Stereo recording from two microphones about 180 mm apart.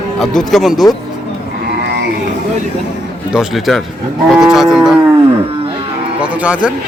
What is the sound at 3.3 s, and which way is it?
Speech, centre (ahead or behind).